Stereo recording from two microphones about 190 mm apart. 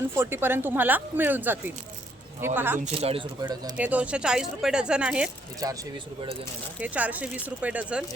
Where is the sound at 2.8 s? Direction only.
30° right (ahead or behind).